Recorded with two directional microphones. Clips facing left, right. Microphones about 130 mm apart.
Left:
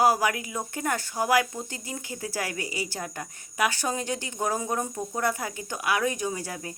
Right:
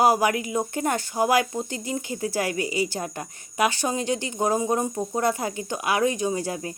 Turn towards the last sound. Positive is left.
turn(degrees=-25)  # may be behind; listen again after turning